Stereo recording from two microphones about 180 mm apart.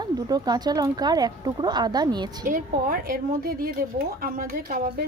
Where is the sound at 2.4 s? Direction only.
50° right (ahead or behind).